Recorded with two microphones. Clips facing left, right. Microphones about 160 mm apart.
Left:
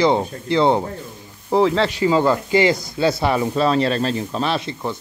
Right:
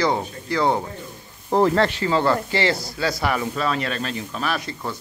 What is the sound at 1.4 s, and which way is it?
Speech, centre (ahead or behind).